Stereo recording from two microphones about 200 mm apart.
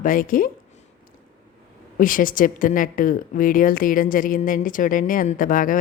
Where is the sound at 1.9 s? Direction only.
45° left (ahead or behind).